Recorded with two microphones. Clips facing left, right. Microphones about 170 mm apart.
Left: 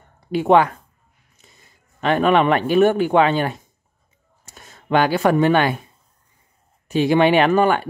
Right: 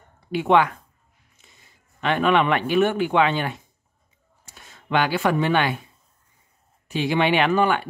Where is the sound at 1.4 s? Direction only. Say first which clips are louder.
Left 4 dB; 45° left (ahead or behind).